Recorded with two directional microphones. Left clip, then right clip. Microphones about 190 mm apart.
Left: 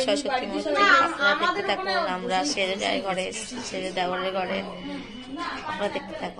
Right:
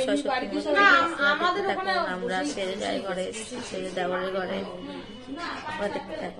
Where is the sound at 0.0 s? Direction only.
10° right (ahead or behind).